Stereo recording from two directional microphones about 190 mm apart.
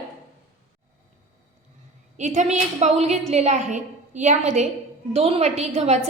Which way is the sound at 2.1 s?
40° right (ahead or behind).